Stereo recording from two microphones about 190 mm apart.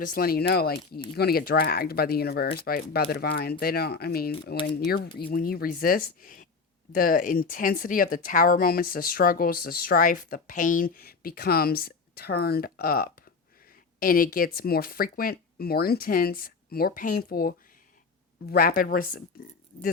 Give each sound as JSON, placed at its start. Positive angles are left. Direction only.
{"t": 0.0, "sound": "speech", "side_deg": 50}